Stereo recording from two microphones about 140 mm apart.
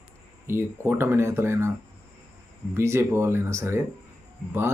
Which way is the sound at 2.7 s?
20° right (ahead or behind).